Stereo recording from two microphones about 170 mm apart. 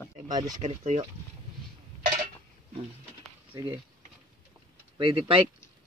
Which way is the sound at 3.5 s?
30° right (ahead or behind).